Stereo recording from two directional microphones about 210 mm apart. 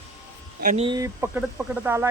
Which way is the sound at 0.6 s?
40° right (ahead or behind).